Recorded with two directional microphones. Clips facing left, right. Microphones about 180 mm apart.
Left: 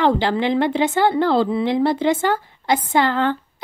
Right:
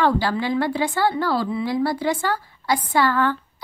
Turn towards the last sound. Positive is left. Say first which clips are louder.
# left 2 dB
turn(degrees=20)  # may be behind; listen again after turning